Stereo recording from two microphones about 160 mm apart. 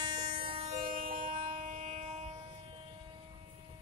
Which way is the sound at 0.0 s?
30° right (ahead or behind).